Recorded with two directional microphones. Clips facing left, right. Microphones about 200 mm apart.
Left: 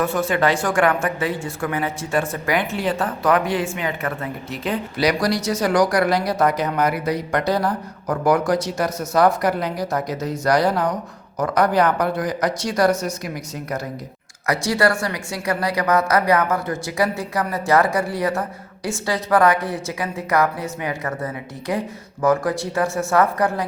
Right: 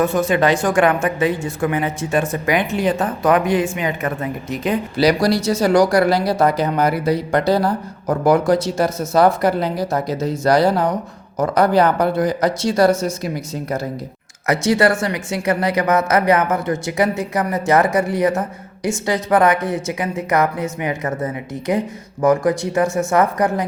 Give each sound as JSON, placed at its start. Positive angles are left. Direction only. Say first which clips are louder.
{"t": 0.0, "sound": "a woman's voice", "louder": "right 3 dB", "side_deg": -20}
{"t": 4.9, "sound": "speech", "louder": "right 4 dB", "side_deg": -30}